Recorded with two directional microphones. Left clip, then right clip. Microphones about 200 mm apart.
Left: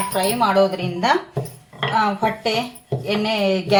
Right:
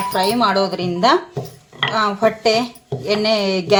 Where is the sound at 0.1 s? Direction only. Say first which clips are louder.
Right 2 dB; 40° right (ahead or behind).